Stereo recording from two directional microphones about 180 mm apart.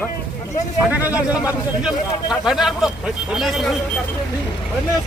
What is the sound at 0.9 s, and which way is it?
A man's voice, 10° right (ahead or behind).